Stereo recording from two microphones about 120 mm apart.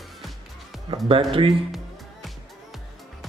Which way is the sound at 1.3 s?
45° right (ahead or behind).